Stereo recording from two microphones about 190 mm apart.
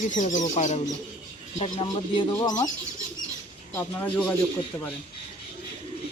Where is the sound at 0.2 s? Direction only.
40° left (ahead or behind); by 2.6 s 20° left (ahead or behind).